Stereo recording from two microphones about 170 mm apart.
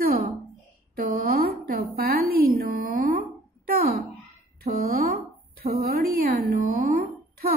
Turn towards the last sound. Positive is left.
turn(degrees=-60)  # may be behind; listen again after turning